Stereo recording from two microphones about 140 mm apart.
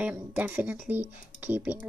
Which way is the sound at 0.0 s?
10° right (ahead or behind).